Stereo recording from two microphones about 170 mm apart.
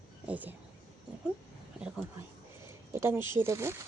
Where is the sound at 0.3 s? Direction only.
10° right (ahead or behind).